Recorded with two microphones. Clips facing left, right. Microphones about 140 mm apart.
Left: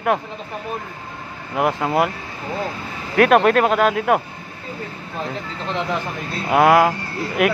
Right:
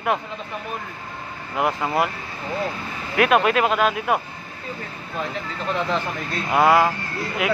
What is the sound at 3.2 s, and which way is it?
Speech, 45° left (ahead or behind).